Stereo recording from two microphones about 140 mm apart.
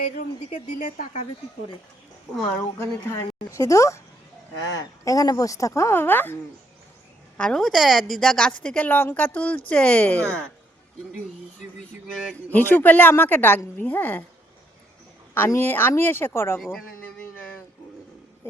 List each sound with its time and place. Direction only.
0.2 s speech: 60° left (ahead or behind)
2.7 s a woman's voice: 15° left (ahead or behind)
12.3 s a woman's voice: 15° left (ahead or behind)
15.4 s a woman's voice: 15° left (ahead or behind)
16.6 s speech: centre (ahead or behind)
17.0 s a sound: 10° left (ahead or behind)